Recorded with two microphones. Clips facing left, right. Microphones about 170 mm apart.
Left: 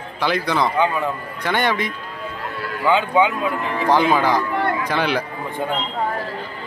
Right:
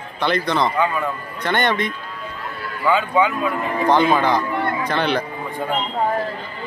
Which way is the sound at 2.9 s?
20° left (ahead or behind).